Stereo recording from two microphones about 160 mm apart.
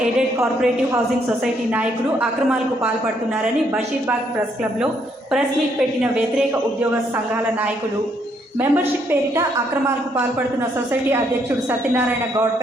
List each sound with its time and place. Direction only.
1.7 s a woman's voice: 5° right (ahead or behind)
8.5 s a woman's voice: 10° right (ahead or behind)